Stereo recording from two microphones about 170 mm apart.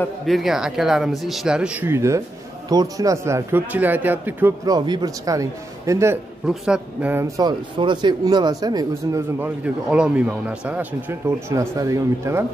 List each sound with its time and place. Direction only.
0.3 s a man's voice: centre (ahead or behind)
4.6 s a man's voice: 25° right (ahead or behind)
6.4 s a man's voice: 5° right (ahead or behind); by 9.2 s 20° right (ahead or behind)
9.4 s a man's voice: 5° right (ahead or behind)